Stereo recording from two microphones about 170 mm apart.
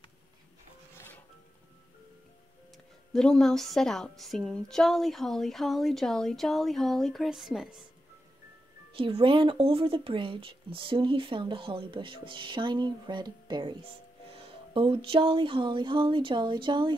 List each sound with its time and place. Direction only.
3.1 s a woman's voice: 5° left (ahead or behind)
8.9 s speech: 30° right (ahead or behind)